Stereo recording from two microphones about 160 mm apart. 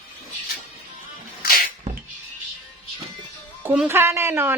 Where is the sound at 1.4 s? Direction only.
65° left (ahead or behind).